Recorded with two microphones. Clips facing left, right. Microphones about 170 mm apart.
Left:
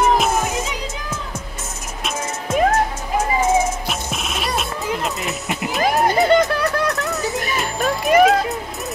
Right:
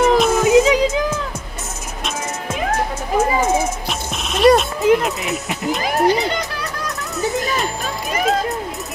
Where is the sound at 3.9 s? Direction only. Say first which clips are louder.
Right 1 dB; 5° left (ahead or behind).